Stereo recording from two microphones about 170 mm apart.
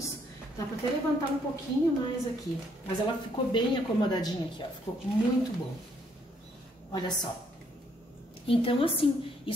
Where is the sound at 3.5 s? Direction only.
30° left (ahead or behind).